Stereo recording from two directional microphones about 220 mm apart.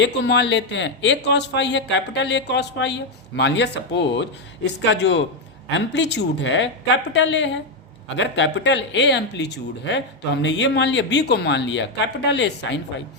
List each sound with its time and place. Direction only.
0.0 s a man's voice: 50° left (ahead or behind)